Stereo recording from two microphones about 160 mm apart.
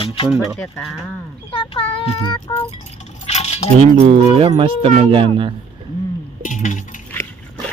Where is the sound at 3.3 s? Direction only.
40° left (ahead or behind).